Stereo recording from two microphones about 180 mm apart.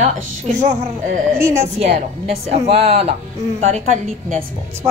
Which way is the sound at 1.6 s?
40° right (ahead or behind).